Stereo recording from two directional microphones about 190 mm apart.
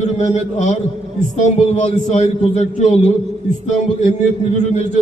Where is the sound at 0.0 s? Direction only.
35° left (ahead or behind).